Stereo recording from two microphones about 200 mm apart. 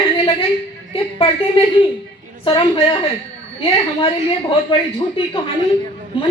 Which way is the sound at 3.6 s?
25° left (ahead or behind).